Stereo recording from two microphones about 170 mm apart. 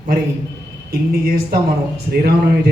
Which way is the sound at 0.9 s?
60° right (ahead or behind).